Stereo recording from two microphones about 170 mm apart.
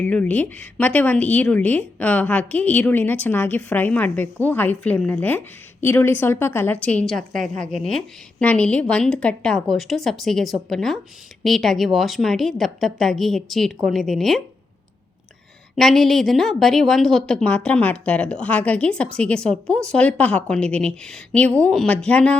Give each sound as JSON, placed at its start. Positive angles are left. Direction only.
{"t": 0.0, "sound": "a woman's voice", "side_deg": 10}
{"t": 7.5, "sound": "speech", "side_deg": -45}
{"t": 7.8, "sound": "a woman's voice", "side_deg": 5}
{"t": 15.7, "sound": "a woman's voice", "side_deg": 0}